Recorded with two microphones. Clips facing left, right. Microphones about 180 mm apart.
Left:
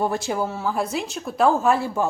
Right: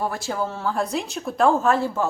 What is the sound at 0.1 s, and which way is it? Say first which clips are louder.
Speech: left 2 dB; 20° left (ahead or behind).